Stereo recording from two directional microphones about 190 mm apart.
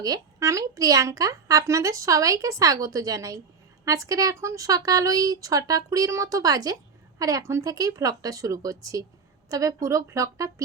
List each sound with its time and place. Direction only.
0.0 s speech: 20° right (ahead or behind)